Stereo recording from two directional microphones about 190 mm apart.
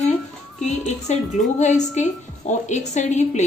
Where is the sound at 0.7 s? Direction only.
35° left (ahead or behind).